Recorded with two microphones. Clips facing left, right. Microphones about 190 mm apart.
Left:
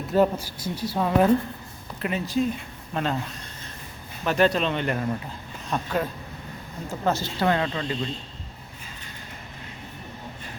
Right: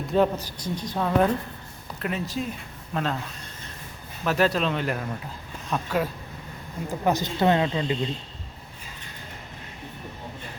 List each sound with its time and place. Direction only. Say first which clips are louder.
0.1 s a woman's voice: left 1 dB; 5° left (ahead or behind)
4.2 s speech: left 1 dB; centre (ahead or behind)
7.0 s speech: right 2 dB; 15° right (ahead or behind)